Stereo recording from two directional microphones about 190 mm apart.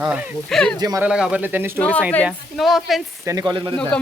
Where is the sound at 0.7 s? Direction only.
20° right (ahead or behind).